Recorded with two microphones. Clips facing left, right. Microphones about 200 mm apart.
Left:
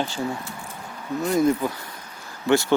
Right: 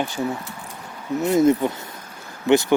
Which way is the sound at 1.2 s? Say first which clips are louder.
Right 4 dB; 25° right (ahead or behind).